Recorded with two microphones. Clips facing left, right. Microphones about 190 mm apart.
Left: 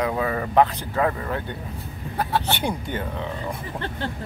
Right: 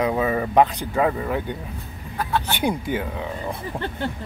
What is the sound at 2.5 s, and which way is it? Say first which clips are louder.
Speech: right 4 dB; 10° right (ahead or behind).